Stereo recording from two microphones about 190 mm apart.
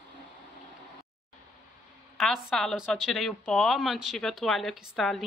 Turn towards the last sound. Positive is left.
turn(degrees=0)  # may be behind; listen again after turning